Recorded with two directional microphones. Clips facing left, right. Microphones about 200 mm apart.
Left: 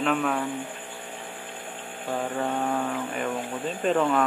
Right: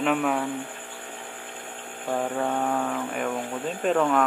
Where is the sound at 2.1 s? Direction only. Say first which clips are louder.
Right 2 dB; 5° right (ahead or behind).